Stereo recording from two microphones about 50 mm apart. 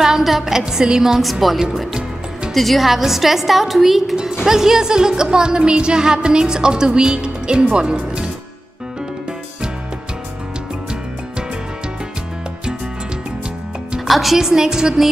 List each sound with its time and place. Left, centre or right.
0.0 s a woman's voice: centre
1.2 s a woman's voice: centre
4.5 s music: centre
7.7 s speech: centre
13.9 s a woman's voice: centre